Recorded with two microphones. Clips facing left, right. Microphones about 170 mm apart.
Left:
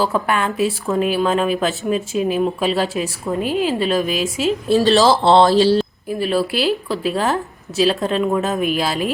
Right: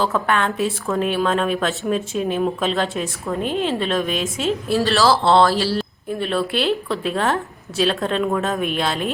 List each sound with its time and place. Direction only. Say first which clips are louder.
0.0 s speech: left 1 dB; 5° left (ahead or behind)
4.7 s speech: left 4 dB; 20° left (ahead or behind)
6.1 s speech: left 1 dB; 5° left (ahead or behind)